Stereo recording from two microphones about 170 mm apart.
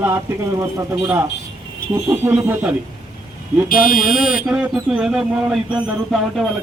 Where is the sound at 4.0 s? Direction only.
5° right (ahead or behind).